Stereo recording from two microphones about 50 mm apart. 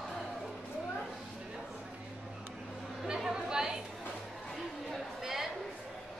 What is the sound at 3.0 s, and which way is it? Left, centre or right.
Chatter, centre.